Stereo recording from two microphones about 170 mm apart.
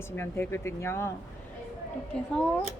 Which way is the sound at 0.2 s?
15° left (ahead or behind).